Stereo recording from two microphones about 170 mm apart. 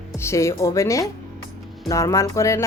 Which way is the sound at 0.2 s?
15° left (ahead or behind).